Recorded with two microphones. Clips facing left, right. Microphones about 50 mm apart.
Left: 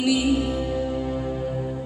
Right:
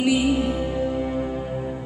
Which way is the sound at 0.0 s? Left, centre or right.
Right.